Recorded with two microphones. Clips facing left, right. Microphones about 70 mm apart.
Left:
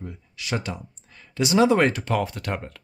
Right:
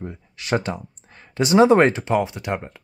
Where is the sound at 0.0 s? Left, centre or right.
Right.